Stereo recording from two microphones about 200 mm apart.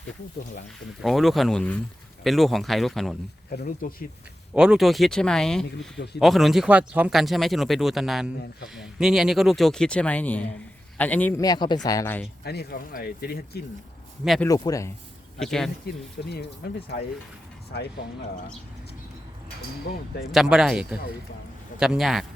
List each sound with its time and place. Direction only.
1.0 s speech: centre (ahead or behind)
3.6 s speech: 45° left (ahead or behind)
4.5 s speech: 5° right (ahead or behind); by 12.2 s 15° left (ahead or behind)
12.5 s speech: 50° left (ahead or behind)
14.4 s speech: 15° left (ahead or behind)
15.4 s speech: centre (ahead or behind)
16.2 s speech: 55° left (ahead or behind)
17.7 s speech: 55° left (ahead or behind)
20.3 s speech: centre (ahead or behind)